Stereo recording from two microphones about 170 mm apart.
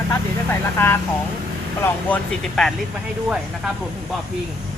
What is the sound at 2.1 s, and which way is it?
Speech, 5° left (ahead or behind).